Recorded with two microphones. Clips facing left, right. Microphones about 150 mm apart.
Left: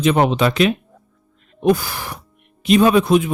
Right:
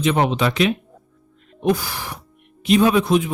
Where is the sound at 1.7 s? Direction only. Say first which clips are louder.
Left 3 dB; 50° left (ahead or behind).